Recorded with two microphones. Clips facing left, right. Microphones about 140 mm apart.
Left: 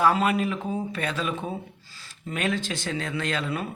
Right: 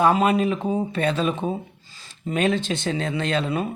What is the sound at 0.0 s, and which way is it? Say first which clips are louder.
Speech: right 4 dB; 20° right (ahead or behind).